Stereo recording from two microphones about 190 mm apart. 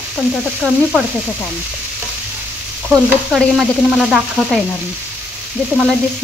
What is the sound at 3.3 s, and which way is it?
Speech, centre (ahead or behind).